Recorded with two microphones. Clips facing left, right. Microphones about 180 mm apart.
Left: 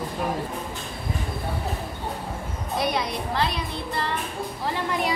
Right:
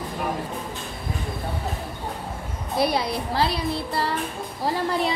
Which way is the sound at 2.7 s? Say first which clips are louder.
Right 3 dB; 35° right (ahead or behind).